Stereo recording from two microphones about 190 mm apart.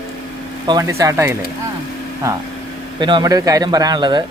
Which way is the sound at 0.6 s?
20° right (ahead or behind).